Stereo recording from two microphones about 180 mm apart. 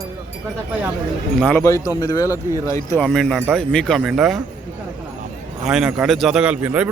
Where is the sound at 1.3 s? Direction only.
5° left (ahead or behind).